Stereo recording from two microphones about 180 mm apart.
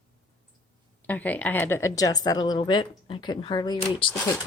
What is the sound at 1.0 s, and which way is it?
A woman's voice, 10° left (ahead or behind).